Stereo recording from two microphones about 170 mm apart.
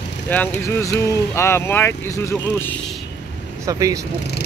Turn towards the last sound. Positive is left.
turn(degrees=-20)  # may be behind; listen again after turning